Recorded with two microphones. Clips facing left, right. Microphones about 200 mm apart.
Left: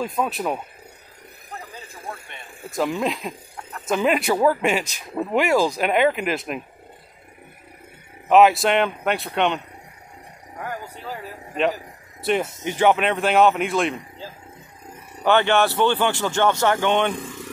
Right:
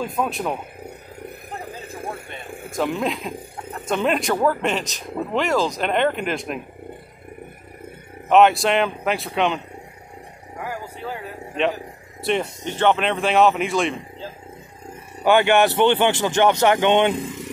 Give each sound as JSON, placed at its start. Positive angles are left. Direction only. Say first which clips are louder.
{"t": 0.0, "sound": "speech", "louder": "even", "side_deg": 0}
{"t": 2.7, "sound": "speech", "louder": "even", "side_deg": 0}
{"t": 8.3, "sound": "speech", "louder": "even", "side_deg": 0}
{"t": 10.6, "sound": "a sound", "louder": "right 2 dB", "side_deg": 0}
{"t": 12.2, "sound": "speech", "louder": "even", "side_deg": 5}
{"t": 15.2, "sound": "speech", "louder": "right 2 dB", "side_deg": -10}